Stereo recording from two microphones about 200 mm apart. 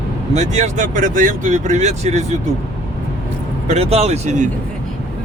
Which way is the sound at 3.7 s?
30° right (ahead or behind).